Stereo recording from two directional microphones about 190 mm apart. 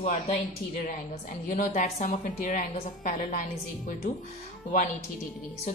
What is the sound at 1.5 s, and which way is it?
A woman's voice, 40° left (ahead or behind).